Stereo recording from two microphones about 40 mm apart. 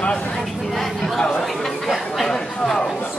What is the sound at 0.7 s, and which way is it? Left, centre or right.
Speech, centre.